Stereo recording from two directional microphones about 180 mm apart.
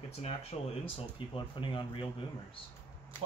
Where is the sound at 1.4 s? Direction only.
30° left (ahead or behind).